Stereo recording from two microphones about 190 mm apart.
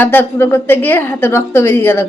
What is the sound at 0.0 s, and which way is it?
A woman's voice, 10° left (ahead or behind).